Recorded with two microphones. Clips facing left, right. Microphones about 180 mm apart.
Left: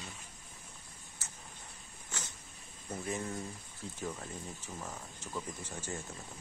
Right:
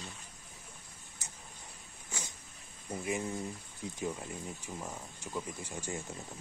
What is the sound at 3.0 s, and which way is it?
Speech, 15° right (ahead or behind).